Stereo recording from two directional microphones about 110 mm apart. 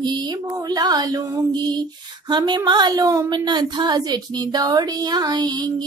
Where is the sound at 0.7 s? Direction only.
35° right (ahead or behind).